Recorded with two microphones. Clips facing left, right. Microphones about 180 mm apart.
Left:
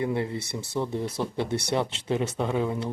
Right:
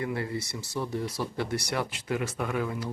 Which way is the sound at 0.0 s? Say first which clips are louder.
Left 4 dB; 25° left (ahead or behind).